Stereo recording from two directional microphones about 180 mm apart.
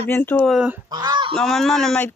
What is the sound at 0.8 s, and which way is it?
Speech, 25° right (ahead or behind).